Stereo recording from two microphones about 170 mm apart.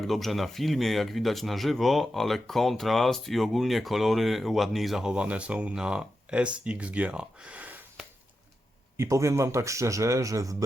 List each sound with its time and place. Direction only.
0.0 s speech: centre (ahead or behind)
9.0 s a man's voice: 15° right (ahead or behind)